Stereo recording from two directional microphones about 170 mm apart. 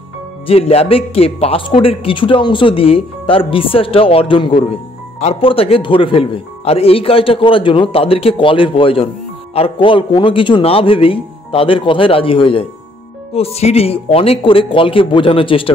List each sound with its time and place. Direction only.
0.5 s speech: 35° left (ahead or behind)